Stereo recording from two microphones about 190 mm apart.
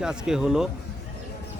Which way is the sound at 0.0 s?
5° right (ahead or behind).